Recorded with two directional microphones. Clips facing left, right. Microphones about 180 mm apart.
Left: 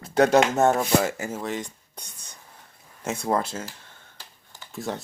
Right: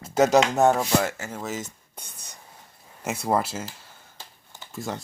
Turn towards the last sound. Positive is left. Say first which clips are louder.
# left 1 dB
turn(degrees=0)  # may be behind; listen again after turning